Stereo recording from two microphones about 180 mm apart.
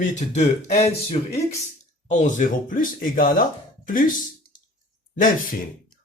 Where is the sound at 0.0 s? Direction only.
40° left (ahead or behind).